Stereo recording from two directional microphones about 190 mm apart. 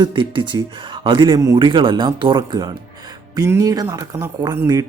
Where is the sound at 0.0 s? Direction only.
25° right (ahead or behind).